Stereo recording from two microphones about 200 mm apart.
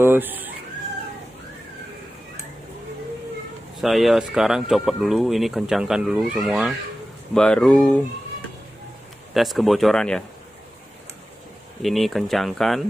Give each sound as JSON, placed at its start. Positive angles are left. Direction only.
{"t": 0.0, "sound": "speech", "side_deg": -10}
{"t": 3.8, "sound": "speech", "side_deg": 0}
{"t": 9.3, "sound": "speech", "side_deg": 0}
{"t": 11.8, "sound": "speech", "side_deg": 0}